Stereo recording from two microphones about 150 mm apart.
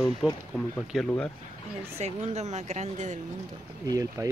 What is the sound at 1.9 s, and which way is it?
Speech, 45° right (ahead or behind).